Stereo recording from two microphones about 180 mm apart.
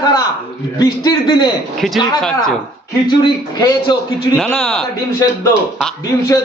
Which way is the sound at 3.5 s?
25° left (ahead or behind).